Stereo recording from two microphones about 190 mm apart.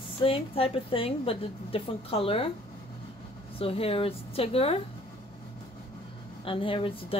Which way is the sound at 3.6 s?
30° left (ahead or behind).